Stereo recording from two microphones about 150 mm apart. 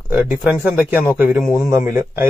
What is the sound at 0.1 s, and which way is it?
A man's voice, 10° right (ahead or behind).